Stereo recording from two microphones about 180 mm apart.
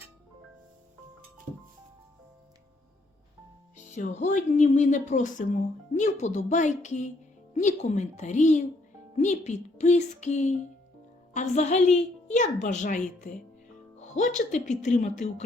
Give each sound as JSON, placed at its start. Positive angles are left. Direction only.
{"t": 3.9, "sound": "a woman's voice", "side_deg": 40}